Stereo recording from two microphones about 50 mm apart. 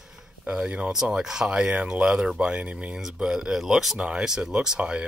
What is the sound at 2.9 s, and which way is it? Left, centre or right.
Speech, centre.